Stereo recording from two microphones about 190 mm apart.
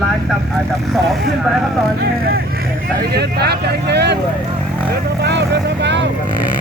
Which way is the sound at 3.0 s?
60° right (ahead or behind).